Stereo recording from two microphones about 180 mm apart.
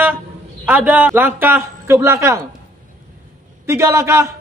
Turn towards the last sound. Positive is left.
turn(degrees=-15)  # may be behind; listen again after turning